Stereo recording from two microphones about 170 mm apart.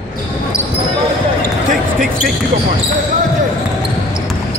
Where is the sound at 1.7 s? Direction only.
55° right (ahead or behind).